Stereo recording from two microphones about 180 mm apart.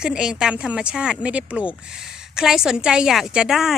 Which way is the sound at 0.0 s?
5° right (ahead or behind).